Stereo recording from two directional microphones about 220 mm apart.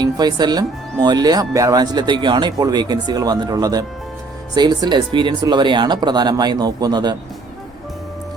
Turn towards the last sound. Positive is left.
turn(degrees=-20)  # may be behind; listen again after turning